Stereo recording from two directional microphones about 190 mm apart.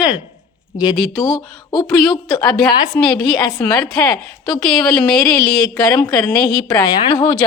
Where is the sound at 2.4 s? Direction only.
5° left (ahead or behind).